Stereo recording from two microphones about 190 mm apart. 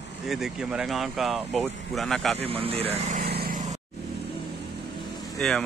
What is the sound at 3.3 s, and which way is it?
Vehicle, 50° right (ahead or behind).